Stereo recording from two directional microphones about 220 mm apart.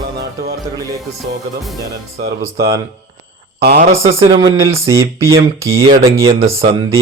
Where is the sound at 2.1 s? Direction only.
45° right (ahead or behind).